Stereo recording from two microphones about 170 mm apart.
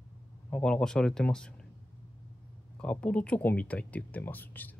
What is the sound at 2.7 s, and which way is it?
Speech, 5° left (ahead or behind).